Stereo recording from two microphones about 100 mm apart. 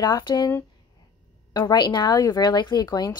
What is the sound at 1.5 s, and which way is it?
Speech, 45° left (ahead or behind).